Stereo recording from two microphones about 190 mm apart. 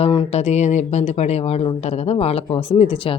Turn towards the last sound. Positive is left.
turn(degrees=30)  # may be behind; listen again after turning